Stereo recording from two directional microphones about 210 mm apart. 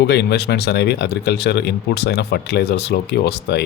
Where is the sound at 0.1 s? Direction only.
55° left (ahead or behind).